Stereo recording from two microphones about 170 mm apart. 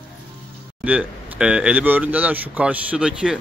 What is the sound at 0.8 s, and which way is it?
Speech, 5° right (ahead or behind).